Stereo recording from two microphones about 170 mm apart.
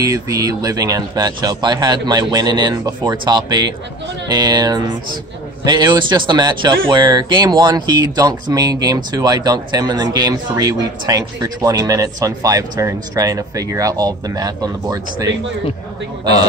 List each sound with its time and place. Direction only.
0.0 s speech: 20° right (ahead or behind)